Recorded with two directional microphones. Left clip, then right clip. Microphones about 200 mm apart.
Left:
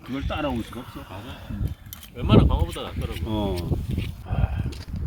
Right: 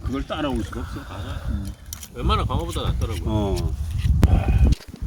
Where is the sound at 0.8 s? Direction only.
40° left (ahead or behind).